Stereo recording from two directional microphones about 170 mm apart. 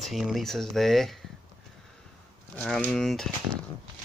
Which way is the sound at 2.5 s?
5° left (ahead or behind).